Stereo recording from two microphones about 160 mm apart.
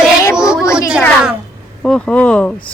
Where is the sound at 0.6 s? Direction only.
20° left (ahead or behind).